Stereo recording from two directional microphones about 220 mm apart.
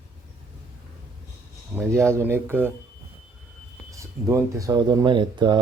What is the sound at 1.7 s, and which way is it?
Speech, 10° right (ahead or behind).